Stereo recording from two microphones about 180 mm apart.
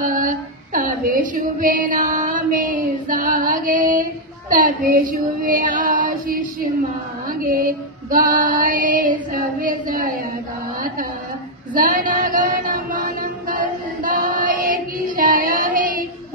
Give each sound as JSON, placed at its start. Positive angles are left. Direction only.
{"t": 0.0, "sound": "female singing", "side_deg": -45}
{"t": 11.7, "sound": "chant", "side_deg": -50}